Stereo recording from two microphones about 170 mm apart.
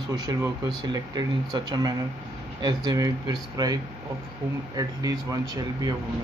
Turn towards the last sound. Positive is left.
turn(degrees=-20)  # may be behind; listen again after turning